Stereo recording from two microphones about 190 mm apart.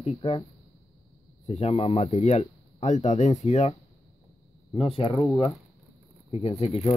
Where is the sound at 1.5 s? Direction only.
35° left (ahead or behind).